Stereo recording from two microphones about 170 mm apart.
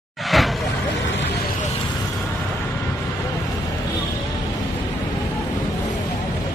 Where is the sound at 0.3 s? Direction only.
Centre (ahead or behind).